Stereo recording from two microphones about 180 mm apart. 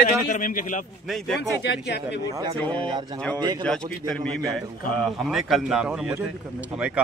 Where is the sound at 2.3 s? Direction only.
20° right (ahead or behind).